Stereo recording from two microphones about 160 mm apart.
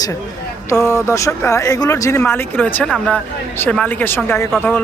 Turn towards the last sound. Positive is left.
turn(degrees=10)  # may be behind; listen again after turning